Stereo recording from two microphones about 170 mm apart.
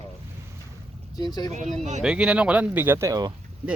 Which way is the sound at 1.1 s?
25° left (ahead or behind).